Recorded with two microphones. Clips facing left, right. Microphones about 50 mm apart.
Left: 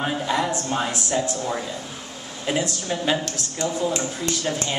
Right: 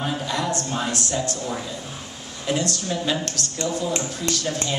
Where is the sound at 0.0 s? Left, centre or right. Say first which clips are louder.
Left 2 dB; left.